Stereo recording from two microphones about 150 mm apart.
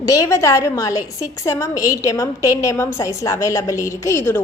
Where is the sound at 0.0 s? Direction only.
20° left (ahead or behind).